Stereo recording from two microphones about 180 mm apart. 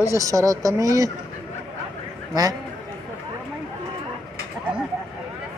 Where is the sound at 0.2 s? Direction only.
20° right (ahead or behind).